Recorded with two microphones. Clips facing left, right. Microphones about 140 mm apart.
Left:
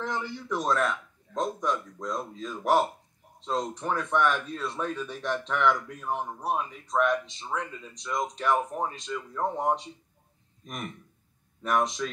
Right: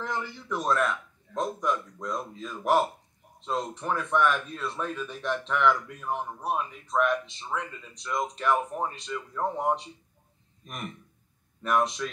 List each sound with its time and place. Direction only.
0.0 s a man's voice: 5° right (ahead or behind)
11.6 s a man's voice: centre (ahead or behind)